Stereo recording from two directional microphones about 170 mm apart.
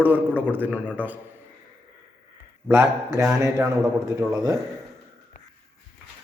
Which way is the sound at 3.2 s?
15° right (ahead or behind).